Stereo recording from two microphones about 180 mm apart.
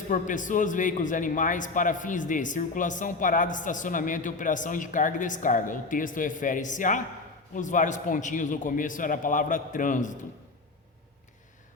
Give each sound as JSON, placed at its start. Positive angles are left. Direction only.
{"t": 0.1, "sound": "a man's voice", "side_deg": 45}